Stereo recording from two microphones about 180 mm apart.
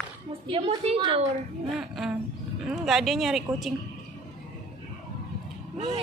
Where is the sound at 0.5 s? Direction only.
35° right (ahead or behind).